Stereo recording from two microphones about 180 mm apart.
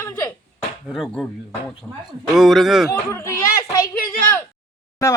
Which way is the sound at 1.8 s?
10° left (ahead or behind).